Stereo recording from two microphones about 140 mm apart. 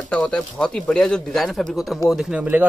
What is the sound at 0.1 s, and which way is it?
A man's voice, 5° left (ahead or behind).